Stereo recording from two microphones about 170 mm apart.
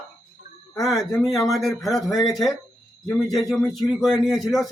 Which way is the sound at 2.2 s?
20° left (ahead or behind).